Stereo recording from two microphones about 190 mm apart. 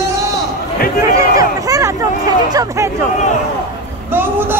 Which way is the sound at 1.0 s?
20° right (ahead or behind).